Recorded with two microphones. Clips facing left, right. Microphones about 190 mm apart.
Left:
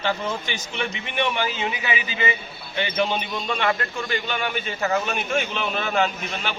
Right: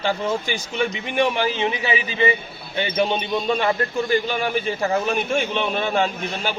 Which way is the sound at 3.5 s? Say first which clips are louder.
Right 2 dB; 35° right (ahead or behind).